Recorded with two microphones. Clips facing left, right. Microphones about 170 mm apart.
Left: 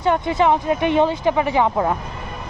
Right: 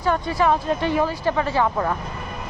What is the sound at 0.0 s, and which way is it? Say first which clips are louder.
Speech: left 3 dB; 20° left (ahead or behind).